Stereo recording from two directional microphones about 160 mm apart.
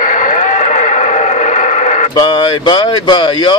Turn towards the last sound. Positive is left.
turn(degrees=30)  # may be behind; listen again after turning